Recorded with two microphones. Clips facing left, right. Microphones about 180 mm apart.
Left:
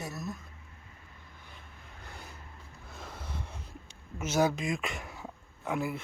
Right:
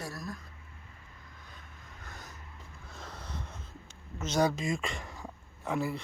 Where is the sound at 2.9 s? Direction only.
5° left (ahead or behind).